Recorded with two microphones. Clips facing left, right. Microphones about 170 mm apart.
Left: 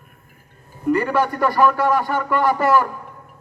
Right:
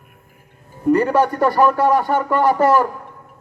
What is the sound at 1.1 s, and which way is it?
Speech, 35° right (ahead or behind).